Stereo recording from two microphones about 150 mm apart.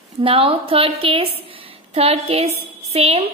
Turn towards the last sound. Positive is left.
turn(degrees=-45)  # may be behind; listen again after turning